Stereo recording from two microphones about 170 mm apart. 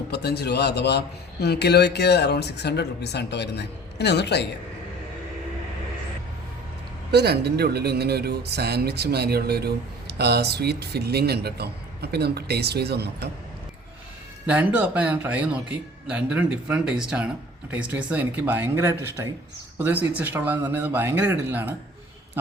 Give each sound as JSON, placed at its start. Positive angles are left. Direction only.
{"t": 0.1, "sound": "a man's voice", "side_deg": 75}
{"t": 7.1, "sound": "speech", "side_deg": -75}
{"t": 14.4, "sound": "speech", "side_deg": -10}